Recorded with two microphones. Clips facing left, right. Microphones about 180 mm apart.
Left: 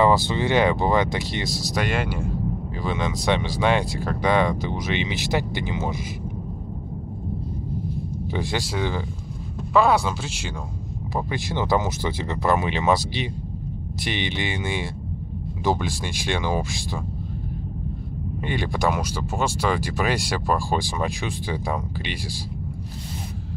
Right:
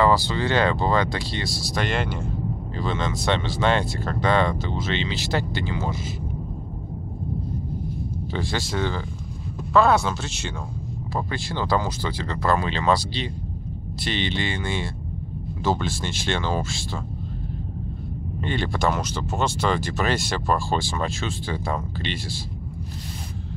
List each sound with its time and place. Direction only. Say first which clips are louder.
0.0 s speech: left 1 dB; 20° left (ahead or behind)
8.3 s speech: left 1 dB; 15° left (ahead or behind)
18.4 s speech: even; 15° left (ahead or behind)